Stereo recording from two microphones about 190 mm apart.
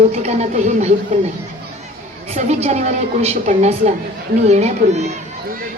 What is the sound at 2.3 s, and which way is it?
A woman's voice, 35° right (ahead or behind).